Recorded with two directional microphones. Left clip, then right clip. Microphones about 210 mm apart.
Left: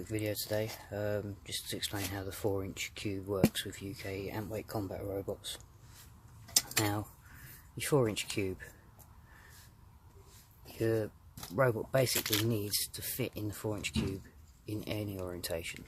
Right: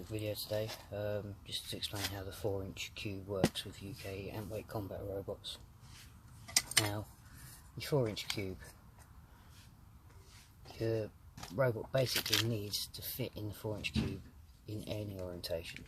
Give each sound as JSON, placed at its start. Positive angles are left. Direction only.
{"t": 0.1, "sound": "speech", "side_deg": 25}
{"t": 7.8, "sound": "speech", "side_deg": 30}
{"t": 10.7, "sound": "speech", "side_deg": 25}